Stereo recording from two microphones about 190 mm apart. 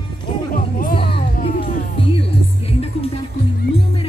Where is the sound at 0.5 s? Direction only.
50° left (ahead or behind).